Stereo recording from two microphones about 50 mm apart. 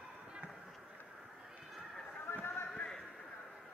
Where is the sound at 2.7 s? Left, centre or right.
Centre.